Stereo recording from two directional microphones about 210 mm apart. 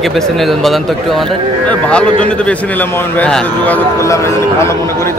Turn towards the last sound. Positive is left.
turn(degrees=15)  # may be behind; listen again after turning